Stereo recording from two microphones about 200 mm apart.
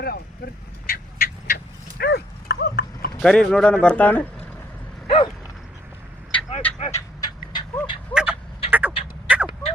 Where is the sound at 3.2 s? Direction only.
5° left (ahead or behind).